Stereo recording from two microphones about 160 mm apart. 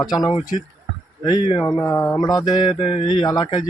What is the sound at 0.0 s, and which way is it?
A man's voice, 25° left (ahead or behind).